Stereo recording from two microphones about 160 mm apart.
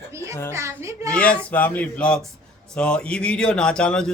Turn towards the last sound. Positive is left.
turn(degrees=5)  # may be behind; listen again after turning